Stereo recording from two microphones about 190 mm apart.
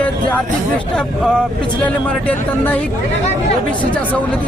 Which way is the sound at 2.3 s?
10° left (ahead or behind).